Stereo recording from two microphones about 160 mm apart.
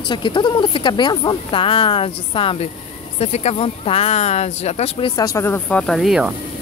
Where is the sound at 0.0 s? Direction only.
30° left (ahead or behind).